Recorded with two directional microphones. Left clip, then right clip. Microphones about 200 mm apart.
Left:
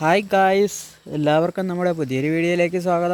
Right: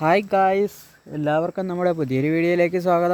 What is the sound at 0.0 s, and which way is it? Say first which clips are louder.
Speech: left 1 dB; 5° right (ahead or behind).